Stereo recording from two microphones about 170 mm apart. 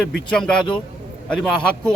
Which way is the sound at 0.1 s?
5° left (ahead or behind).